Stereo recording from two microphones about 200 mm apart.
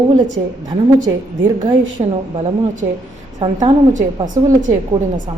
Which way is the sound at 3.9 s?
40° right (ahead or behind).